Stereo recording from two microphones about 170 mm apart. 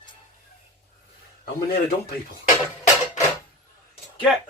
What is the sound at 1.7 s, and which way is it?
Speech, 65° left (ahead or behind).